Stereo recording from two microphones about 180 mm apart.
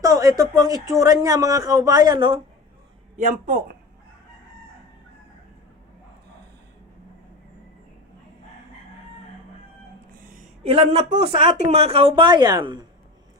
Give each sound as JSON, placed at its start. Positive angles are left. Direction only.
{"t": 0.0, "sound": "speech", "side_deg": -20}
{"t": 3.2, "sound": "speech", "side_deg": -45}
{"t": 10.6, "sound": "speech", "side_deg": -35}